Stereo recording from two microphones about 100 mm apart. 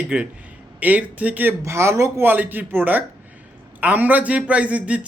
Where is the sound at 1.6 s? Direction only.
25° right (ahead or behind); by 5.1 s 10° right (ahead or behind).